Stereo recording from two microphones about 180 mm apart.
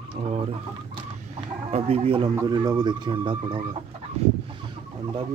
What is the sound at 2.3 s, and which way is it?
Speech, 20° right (ahead or behind).